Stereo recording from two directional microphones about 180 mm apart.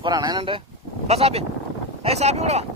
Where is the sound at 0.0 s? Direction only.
25° right (ahead or behind).